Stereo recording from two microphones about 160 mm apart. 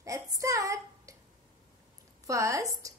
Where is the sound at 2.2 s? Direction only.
20° right (ahead or behind).